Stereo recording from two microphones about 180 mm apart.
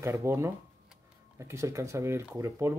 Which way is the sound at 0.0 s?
15° right (ahead or behind).